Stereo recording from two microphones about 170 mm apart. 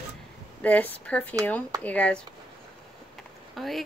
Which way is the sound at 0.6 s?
10° left (ahead or behind).